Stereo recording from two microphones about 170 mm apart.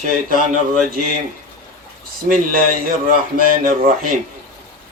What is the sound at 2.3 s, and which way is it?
A man's voice, 55° right (ahead or behind).